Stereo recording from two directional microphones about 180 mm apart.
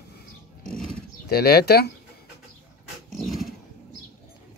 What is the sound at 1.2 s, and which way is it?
Speech, 60° left (ahead or behind).